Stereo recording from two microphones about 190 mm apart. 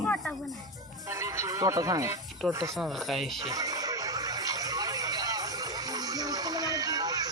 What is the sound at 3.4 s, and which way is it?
Neigh, 20° right (ahead or behind).